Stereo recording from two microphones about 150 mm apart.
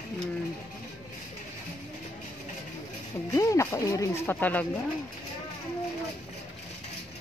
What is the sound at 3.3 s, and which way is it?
Speech, 20° left (ahead or behind).